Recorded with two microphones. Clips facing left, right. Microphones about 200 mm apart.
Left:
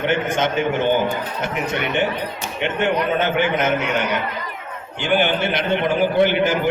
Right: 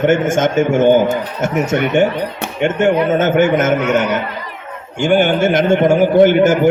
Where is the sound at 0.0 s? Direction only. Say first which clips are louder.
Right 7 dB; 45° right (ahead or behind).